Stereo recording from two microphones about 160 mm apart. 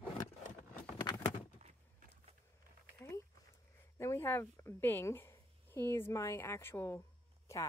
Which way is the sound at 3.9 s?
15° left (ahead or behind).